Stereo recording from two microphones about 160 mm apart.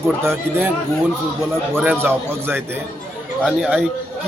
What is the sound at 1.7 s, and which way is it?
Speech, 15° right (ahead or behind).